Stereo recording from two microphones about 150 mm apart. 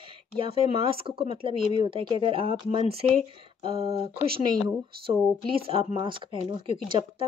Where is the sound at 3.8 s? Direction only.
40° right (ahead or behind).